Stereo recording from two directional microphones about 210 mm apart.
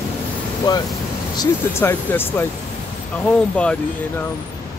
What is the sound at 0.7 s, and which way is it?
Speech, 20° left (ahead or behind).